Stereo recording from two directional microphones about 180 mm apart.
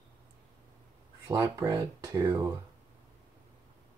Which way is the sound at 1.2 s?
15° right (ahead or behind).